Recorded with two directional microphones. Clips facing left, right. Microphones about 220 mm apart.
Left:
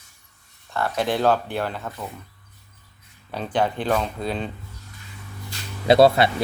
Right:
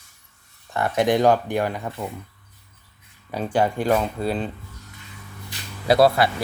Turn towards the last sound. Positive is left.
turn(degrees=25)  # may be behind; listen again after turning